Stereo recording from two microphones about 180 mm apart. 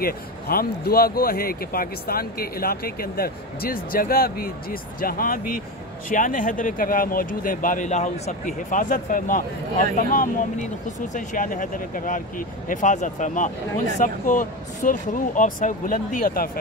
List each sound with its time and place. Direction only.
0.0 s speech: 55° left (ahead or behind)